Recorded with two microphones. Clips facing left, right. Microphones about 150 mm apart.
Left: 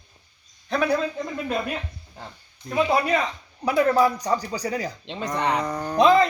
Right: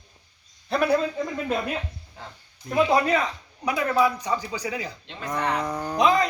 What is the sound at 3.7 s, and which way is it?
Speech, 40° left (ahead or behind).